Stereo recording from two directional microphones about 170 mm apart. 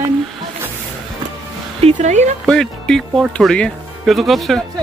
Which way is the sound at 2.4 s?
5° left (ahead or behind).